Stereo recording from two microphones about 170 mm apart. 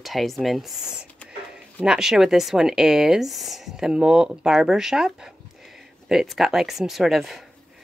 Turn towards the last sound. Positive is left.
turn(degrees=0)  # may be behind; listen again after turning